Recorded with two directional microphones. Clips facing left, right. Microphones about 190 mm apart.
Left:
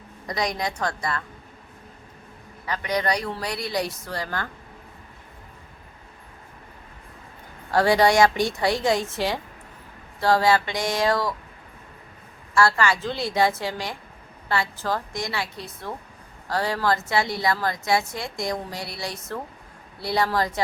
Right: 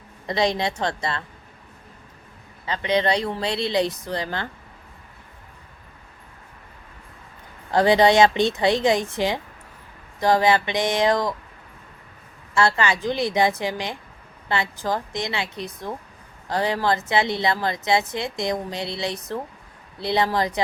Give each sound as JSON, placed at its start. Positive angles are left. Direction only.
{"t": 0.3, "sound": "a woman's voice", "side_deg": -25}
{"t": 2.6, "sound": "a woman's voice", "side_deg": -25}
{"t": 7.7, "sound": "a woman's voice", "side_deg": -20}
{"t": 12.5, "sound": "a woman's voice", "side_deg": -20}